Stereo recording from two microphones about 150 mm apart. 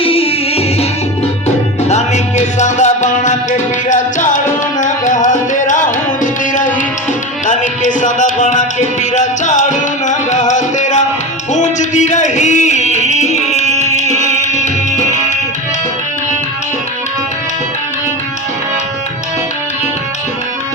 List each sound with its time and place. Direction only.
0.0 s music: 40° left (ahead or behind)
1.9 s music: 50° left (ahead or behind)
4.8 s tabla: 55° left (ahead or behind)
6.5 s music: 60° left (ahead or behind)